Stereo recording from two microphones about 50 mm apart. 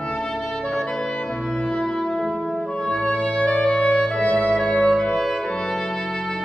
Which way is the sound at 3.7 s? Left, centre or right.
Centre.